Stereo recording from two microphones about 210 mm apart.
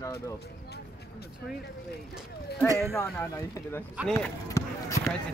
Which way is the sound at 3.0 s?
15° left (ahead or behind).